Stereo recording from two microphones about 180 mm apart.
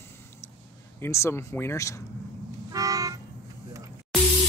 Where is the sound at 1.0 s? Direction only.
15° left (ahead or behind).